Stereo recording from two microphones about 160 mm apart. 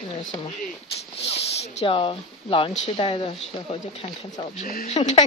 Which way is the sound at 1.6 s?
40° left (ahead or behind).